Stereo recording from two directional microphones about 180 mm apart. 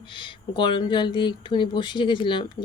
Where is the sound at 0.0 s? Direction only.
25° left (ahead or behind).